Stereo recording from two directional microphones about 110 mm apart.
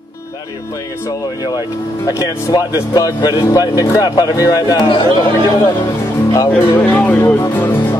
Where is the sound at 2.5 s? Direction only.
40° left (ahead or behind).